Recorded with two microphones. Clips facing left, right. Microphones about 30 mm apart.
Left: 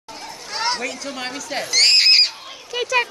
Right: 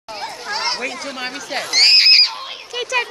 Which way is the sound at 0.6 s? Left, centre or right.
Centre.